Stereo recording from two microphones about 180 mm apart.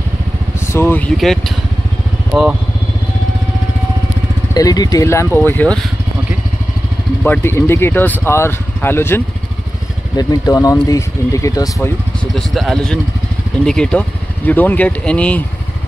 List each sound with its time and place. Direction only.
0.7 s speech: 15° left (ahead or behind)
4.6 s speech: 20° left (ahead or behind)
7.2 s speech: 15° left (ahead or behind)
12.4 s speech: centre (ahead or behind)